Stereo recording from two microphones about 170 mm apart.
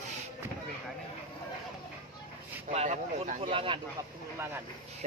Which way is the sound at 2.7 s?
40° right (ahead or behind).